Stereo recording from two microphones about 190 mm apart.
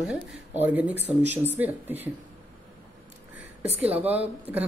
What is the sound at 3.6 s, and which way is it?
Speech, 35° right (ahead or behind).